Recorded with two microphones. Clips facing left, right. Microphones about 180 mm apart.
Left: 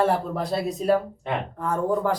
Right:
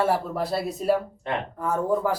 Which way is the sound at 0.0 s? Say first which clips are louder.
Left 1 dB; 5° right (ahead or behind).